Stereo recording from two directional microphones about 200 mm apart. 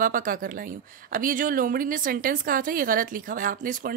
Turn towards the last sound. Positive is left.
turn(degrees=-45)  # may be behind; listen again after turning